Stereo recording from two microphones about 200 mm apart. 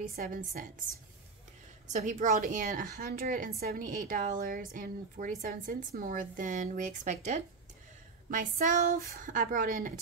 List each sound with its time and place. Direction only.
0.0 s a woman's voice: 45° right (ahead or behind)
1.9 s a woman's voice: 40° right (ahead or behind)